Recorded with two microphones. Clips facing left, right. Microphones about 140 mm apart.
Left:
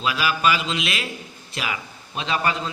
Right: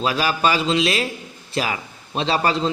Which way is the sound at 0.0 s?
35° right (ahead or behind).